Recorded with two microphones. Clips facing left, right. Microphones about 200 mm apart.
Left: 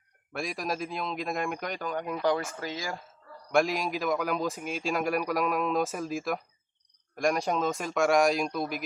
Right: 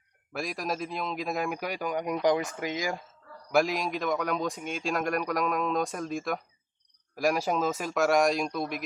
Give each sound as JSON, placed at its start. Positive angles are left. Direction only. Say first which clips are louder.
{"t": 0.3, "sound": "a man's voice", "louder": "even", "side_deg": 0}
{"t": 3.5, "sound": "a man's voice", "louder": "even", "side_deg": 0}